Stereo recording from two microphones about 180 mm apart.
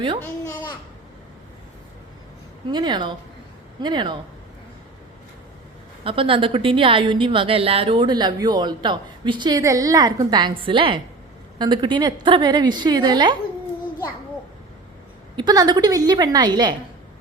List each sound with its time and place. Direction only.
2.7 s a woman's voice: 25° right (ahead or behind)
6.1 s a woman's voice: 30° right (ahead or behind)
15.4 s a woman's voice: 25° right (ahead or behind)